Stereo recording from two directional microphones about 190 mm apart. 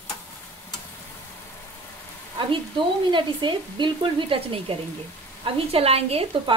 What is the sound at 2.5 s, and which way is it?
Speech, 25° right (ahead or behind).